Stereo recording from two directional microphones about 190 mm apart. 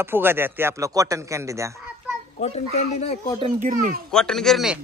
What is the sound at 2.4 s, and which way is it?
Speech, 35° left (ahead or behind).